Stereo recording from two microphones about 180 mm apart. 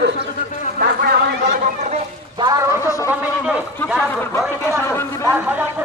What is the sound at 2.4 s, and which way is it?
Speech, 20° right (ahead or behind).